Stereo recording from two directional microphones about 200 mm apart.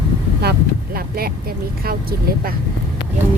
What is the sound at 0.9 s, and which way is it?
Vehicle, 50° right (ahead or behind).